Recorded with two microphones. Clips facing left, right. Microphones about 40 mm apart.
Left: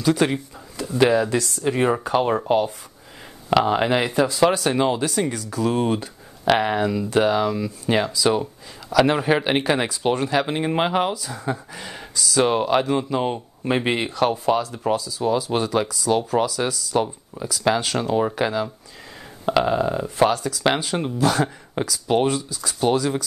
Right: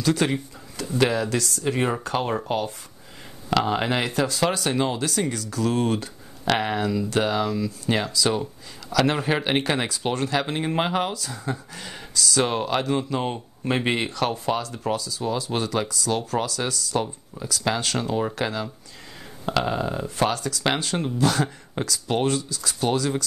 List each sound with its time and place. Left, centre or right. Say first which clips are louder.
0.0 s speech: left 3 dB; centre
7.5 s speech: left 1 dB; centre
7.9 s speech: left 4 dB; centre